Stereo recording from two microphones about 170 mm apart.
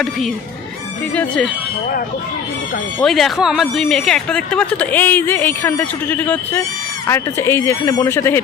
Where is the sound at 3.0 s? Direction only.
Centre (ahead or behind).